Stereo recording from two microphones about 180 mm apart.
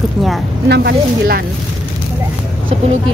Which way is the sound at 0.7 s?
60° right (ahead or behind).